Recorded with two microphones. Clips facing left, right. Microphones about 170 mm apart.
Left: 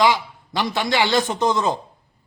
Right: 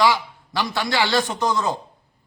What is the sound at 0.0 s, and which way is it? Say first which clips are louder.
A man's voice: left 1 dB; 20° left (ahead or behind).